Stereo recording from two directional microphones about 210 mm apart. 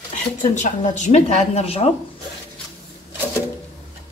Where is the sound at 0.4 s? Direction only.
35° left (ahead or behind).